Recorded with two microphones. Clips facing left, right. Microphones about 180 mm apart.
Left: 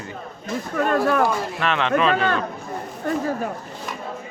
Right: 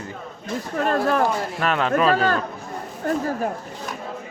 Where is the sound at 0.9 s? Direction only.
30° right (ahead or behind).